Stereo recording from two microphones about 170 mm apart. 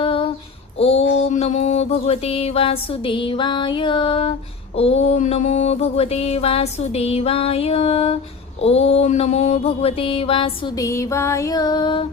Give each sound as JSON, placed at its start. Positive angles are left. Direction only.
{"t": 0.0, "sound": "female singing", "side_deg": 30}
{"t": 0.8, "sound": "mantra", "side_deg": 35}
{"t": 10.8, "sound": "music", "side_deg": 20}